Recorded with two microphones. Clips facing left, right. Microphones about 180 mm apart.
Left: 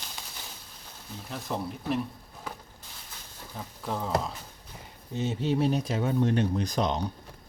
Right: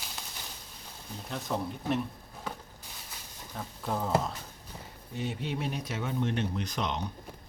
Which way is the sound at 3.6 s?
Centre (ahead or behind).